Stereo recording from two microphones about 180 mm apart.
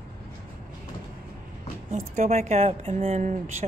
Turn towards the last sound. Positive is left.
turn(degrees=-40)  # may be behind; listen again after turning